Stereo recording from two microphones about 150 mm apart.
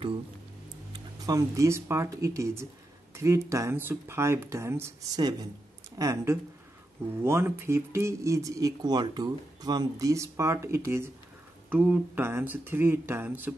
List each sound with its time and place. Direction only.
0.9 s speech: 25° right (ahead or behind)